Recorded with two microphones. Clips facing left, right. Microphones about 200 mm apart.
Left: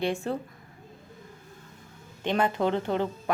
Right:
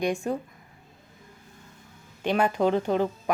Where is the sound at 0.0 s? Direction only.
15° right (ahead or behind).